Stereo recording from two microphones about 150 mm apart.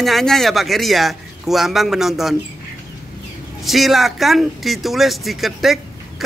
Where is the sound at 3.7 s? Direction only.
Centre (ahead or behind).